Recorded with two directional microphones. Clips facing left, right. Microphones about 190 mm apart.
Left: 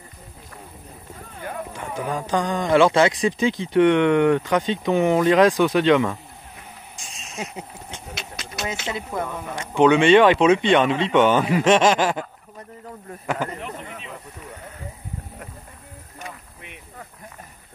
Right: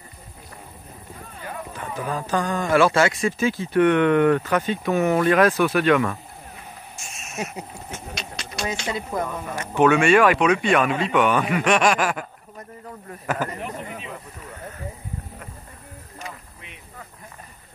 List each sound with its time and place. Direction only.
1.7 s speech: 15° left (ahead or behind)
7.0 s a sound: 15° left (ahead or behind)
8.2 s a sound: 5° left (ahead or behind)
9.1 s speech: centre (ahead or behind)
9.6 s speech: 15° left (ahead or behind)
13.6 s speech: 5° right (ahead or behind)